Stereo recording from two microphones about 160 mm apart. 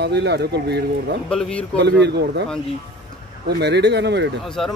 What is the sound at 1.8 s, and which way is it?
Speech, 90° right.